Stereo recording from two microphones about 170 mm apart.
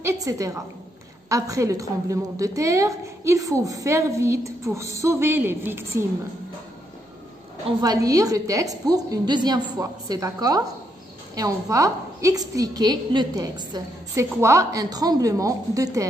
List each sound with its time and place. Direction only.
0.0 s a woman's voice: 20° right (ahead or behind)
7.8 s a woman's voice: 20° right (ahead or behind)